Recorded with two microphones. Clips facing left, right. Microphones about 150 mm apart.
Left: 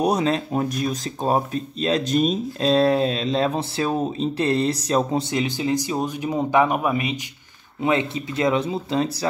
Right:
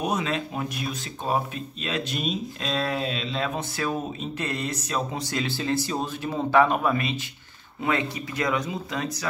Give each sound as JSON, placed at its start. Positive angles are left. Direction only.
{"t": 0.0, "sound": "speech", "side_deg": 35}
{"t": 5.3, "sound": "speech", "side_deg": 15}